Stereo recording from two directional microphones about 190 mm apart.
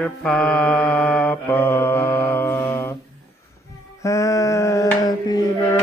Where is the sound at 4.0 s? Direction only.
15° left (ahead or behind).